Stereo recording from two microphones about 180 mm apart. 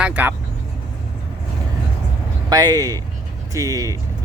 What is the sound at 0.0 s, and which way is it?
Vehicle, 10° right (ahead or behind).